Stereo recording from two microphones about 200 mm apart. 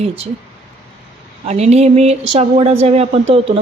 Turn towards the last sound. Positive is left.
turn(degrees=-30)  # may be behind; listen again after turning